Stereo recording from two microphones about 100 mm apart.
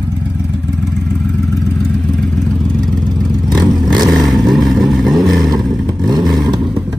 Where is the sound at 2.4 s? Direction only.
Centre (ahead or behind).